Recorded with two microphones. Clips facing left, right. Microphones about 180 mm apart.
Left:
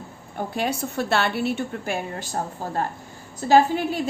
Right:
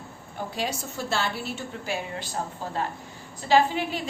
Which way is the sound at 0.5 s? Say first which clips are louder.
Left 6 dB; 60° left (ahead or behind).